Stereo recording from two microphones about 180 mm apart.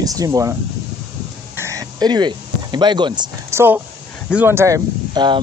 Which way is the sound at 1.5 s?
15° right (ahead or behind).